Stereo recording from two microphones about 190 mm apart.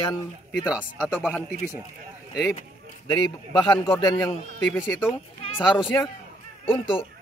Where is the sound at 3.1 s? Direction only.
25° left (ahead or behind).